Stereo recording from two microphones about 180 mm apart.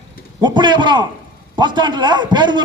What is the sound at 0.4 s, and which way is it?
A man's voice, 25° right (ahead or behind).